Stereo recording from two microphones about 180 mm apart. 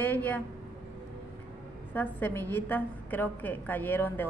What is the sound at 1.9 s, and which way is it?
A woman's voice, 10° left (ahead or behind).